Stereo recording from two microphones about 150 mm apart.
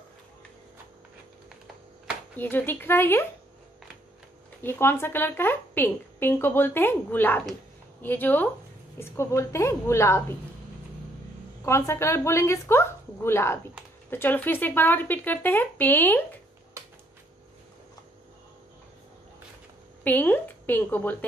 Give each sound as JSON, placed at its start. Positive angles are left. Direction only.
{"t": 2.3, "sound": "a woman's voice", "side_deg": 15}
{"t": 4.6, "sound": "a woman's voice", "side_deg": 15}
{"t": 11.6, "sound": "a woman's voice", "side_deg": 15}
{"t": 20.0, "sound": "a woman's voice", "side_deg": 10}